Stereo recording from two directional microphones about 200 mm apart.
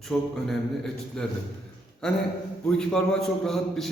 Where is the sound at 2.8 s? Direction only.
Centre (ahead or behind).